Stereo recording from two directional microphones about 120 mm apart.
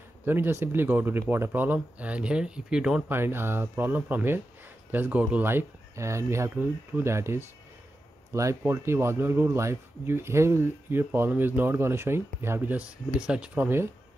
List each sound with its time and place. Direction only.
0.2 s speech: 20° right (ahead or behind)
3.1 s speech: 20° right (ahead or behind)